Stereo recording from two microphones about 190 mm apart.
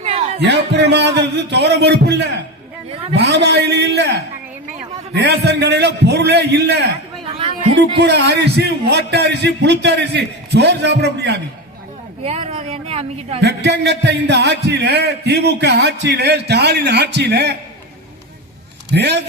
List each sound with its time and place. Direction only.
0.0 s music: 35° right (ahead or behind)
0.3 s a man's voice: 65° right (ahead or behind)
5.1 s a man's voice: 60° right (ahead or behind)
7.3 s music: 30° right (ahead or behind)
8.0 s a man's voice: 65° right (ahead or behind)
12.2 s speech: 35° right (ahead or behind)
13.4 s a man's voice: 60° right (ahead or behind)
18.9 s a man's voice: 65° right (ahead or behind)